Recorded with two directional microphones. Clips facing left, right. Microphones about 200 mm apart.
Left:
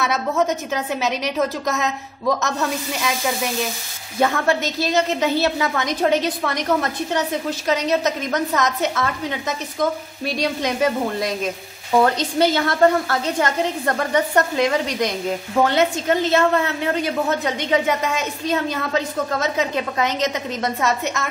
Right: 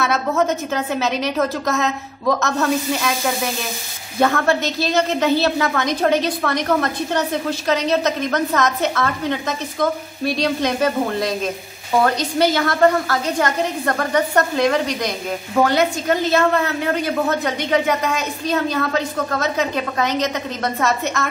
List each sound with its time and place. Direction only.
0.0 s a woman's voice: 15° left (ahead or behind)
4.2 s a woman's voice: 15° left (ahead or behind)